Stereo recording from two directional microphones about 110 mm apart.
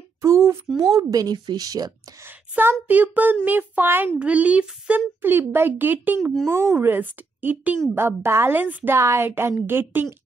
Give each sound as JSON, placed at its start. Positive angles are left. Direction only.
{"t": 0.2, "sound": "a woman's voice", "side_deg": -25}
{"t": 2.2, "sound": "a child's voice", "side_deg": -20}